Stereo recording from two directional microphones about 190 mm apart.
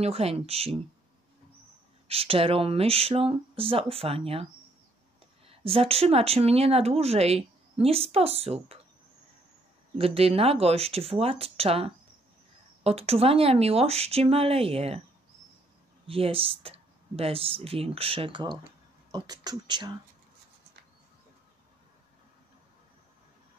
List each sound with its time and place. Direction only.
0.0 s speech: 30° right (ahead or behind)
2.0 s speech: 30° right (ahead or behind)
5.5 s speech: 30° right (ahead or behind)
9.9 s speech: 30° right (ahead or behind)
16.1 s speech: 30° right (ahead or behind)